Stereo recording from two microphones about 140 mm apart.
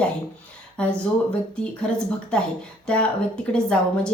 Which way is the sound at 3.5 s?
5° left (ahead or behind).